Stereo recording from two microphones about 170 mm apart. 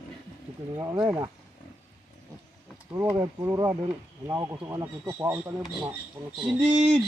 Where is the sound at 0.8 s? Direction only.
20° right (ahead or behind).